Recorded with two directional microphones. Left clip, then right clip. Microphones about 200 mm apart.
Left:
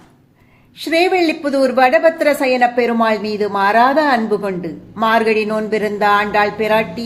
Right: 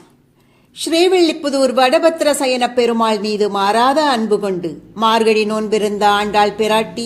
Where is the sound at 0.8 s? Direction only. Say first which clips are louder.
Right 1 dB; 30° right (ahead or behind).